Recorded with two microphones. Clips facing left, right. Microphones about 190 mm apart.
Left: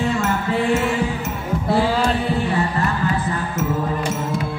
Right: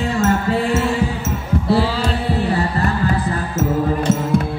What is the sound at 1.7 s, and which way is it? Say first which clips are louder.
Music: even; 50° left (ahead or behind).